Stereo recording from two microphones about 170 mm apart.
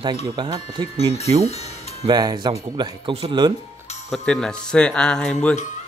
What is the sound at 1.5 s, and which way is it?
Music, 40° left (ahead or behind).